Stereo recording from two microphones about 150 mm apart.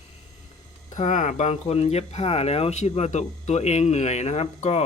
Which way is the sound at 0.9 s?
55° left (ahead or behind).